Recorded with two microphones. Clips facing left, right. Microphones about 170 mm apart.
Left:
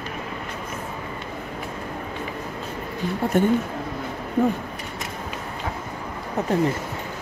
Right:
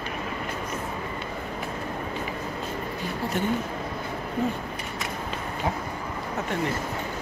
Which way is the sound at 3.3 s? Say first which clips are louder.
Left 8 dB; 50° left (ahead or behind).